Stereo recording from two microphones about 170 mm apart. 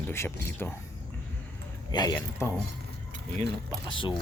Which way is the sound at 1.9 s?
20° left (ahead or behind).